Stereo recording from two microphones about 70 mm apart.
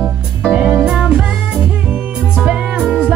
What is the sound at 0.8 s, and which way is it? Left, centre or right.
Music, centre.